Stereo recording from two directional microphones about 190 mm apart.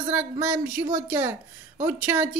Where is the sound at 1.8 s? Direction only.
10° right (ahead or behind).